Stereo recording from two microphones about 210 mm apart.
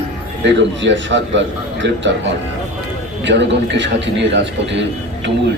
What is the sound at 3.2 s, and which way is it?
A man's voice, 55° right (ahead or behind).